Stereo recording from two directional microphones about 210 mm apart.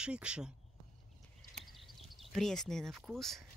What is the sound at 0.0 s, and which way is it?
Speech, 5° right (ahead or behind).